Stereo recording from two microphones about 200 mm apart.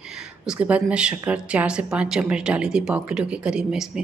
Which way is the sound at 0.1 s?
5° right (ahead or behind).